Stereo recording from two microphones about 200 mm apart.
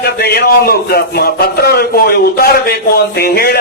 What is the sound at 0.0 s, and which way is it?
A man's voice, 50° left (ahead or behind).